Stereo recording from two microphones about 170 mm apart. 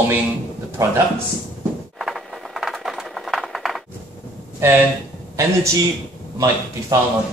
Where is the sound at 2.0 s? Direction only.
Centre (ahead or behind).